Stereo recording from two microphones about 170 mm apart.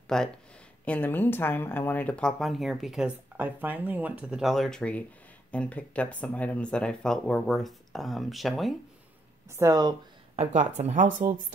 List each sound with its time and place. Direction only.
0.1 s speech: 5° left (ahead or behind)
9.5 s speech: 20° right (ahead or behind)
10.3 s speech: 40° right (ahead or behind)